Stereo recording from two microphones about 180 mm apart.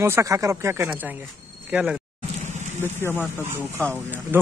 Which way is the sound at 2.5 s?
40° right (ahead or behind).